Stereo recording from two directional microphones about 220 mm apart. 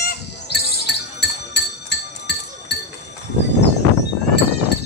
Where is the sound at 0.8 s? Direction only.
50° left (ahead or behind).